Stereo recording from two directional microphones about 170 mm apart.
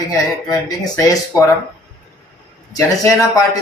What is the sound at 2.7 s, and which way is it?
Speech, 20° left (ahead or behind).